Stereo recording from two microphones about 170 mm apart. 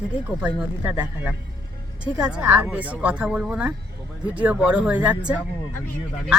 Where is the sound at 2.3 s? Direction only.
10° right (ahead or behind).